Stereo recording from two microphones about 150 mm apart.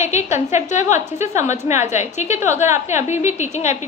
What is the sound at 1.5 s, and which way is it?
Speech, 20° right (ahead or behind).